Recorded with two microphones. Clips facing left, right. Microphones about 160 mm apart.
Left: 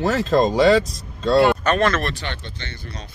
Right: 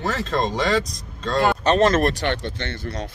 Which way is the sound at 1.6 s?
35° right (ahead or behind).